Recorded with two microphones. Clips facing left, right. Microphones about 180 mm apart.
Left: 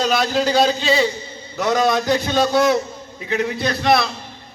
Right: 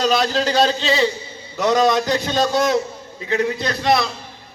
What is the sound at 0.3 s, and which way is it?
Speech, 15° left (ahead or behind).